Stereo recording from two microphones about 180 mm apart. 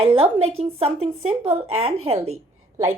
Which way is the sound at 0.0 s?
30° right (ahead or behind).